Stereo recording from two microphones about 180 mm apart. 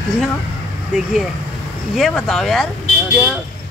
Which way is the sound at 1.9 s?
Centre (ahead or behind).